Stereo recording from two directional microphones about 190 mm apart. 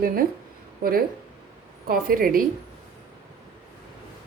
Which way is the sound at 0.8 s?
50° right (ahead or behind).